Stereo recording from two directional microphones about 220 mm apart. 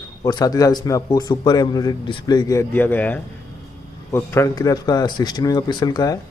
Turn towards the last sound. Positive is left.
turn(degrees=15)  # may be behind; listen again after turning